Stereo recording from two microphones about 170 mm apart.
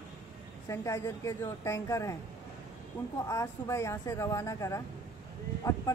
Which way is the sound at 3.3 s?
20° left (ahead or behind).